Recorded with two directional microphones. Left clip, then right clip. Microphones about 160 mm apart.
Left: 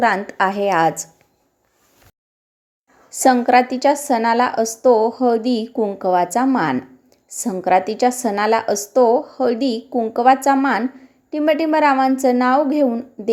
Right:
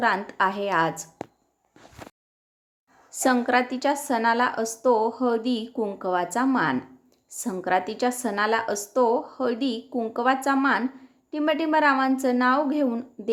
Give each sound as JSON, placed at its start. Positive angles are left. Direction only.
{"t": 0.2, "sound": "a woman's voice", "side_deg": 15}
{"t": 3.2, "sound": "a woman's voice", "side_deg": 15}